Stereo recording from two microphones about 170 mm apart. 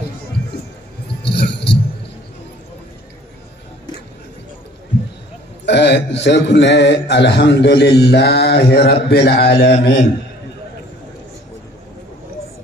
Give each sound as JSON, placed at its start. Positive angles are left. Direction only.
{"t": 1.2, "sound": "music", "side_deg": 80}
{"t": 5.7, "sound": "a man's voice", "side_deg": 90}